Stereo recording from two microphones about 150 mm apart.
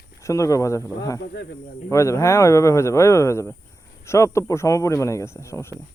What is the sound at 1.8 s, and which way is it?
A man's voice, 20° left (ahead or behind).